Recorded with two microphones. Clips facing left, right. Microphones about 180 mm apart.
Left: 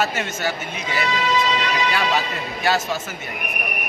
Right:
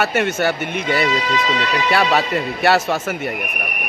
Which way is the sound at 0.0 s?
60° right (ahead or behind).